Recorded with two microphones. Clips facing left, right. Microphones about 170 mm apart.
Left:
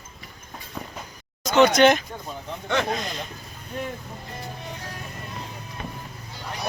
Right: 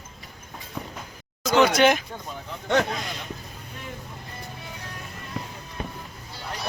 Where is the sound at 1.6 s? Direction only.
10° right (ahead or behind).